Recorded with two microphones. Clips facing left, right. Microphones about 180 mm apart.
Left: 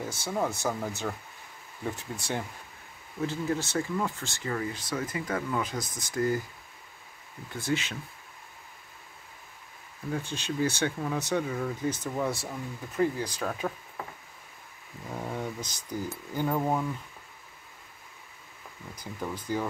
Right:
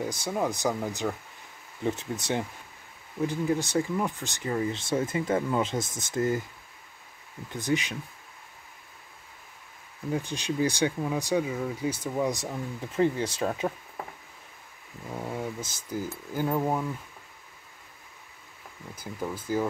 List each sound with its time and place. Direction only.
0.0 s speech: 15° right (ahead or behind)
7.5 s speech: 15° right (ahead or behind)
10.1 s speech: 15° right (ahead or behind)
12.8 s speech: 25° right (ahead or behind)
15.1 s speech: 5° right (ahead or behind)
18.9 s speech: 5° right (ahead or behind)